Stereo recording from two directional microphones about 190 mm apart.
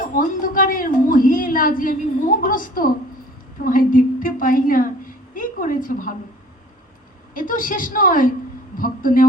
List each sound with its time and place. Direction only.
0.2 s a woman's voice: 45° left (ahead or behind)
7.3 s a woman's voice: 45° left (ahead or behind)